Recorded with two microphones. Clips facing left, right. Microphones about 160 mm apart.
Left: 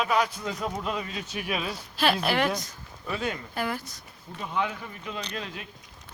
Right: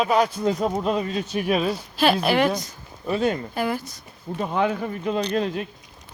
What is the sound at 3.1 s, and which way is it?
Speech, 30° right (ahead or behind).